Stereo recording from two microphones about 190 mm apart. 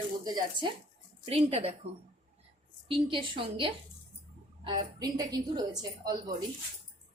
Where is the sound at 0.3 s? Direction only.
20° right (ahead or behind).